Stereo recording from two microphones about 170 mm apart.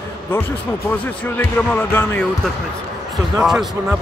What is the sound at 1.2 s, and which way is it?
Speech, 10° left (ahead or behind).